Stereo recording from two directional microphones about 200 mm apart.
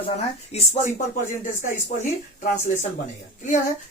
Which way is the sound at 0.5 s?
30° left (ahead or behind).